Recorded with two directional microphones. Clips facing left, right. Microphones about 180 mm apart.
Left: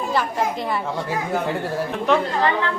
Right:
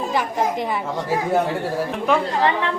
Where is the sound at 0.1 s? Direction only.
15° right (ahead or behind).